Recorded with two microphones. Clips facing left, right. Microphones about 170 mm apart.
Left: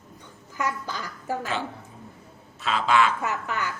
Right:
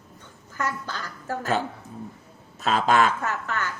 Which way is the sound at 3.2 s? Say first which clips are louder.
Even; 10° left (ahead or behind).